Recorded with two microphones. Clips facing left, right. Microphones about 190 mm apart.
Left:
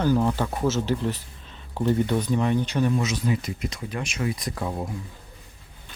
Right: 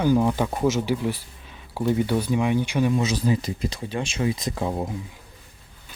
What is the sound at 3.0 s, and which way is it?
Speech, 35° right (ahead or behind).